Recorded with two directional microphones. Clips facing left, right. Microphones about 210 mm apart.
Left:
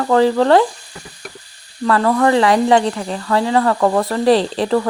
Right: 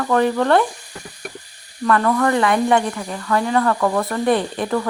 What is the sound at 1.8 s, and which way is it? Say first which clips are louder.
Speech: left 3 dB; 25° left (ahead or behind).